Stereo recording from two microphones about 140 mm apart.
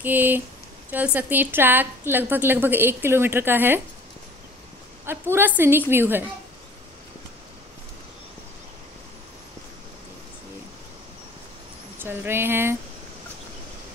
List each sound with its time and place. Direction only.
0.0 s a woman's voice: 15° right (ahead or behind)
5.0 s a woman's voice: 15° right (ahead or behind)
12.0 s a woman's voice: 15° right (ahead or behind)